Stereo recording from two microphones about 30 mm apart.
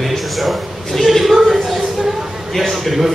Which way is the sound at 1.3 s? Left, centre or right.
Centre.